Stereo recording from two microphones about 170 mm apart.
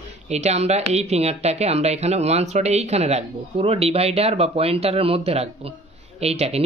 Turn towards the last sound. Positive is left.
turn(degrees=-35)  # may be behind; listen again after turning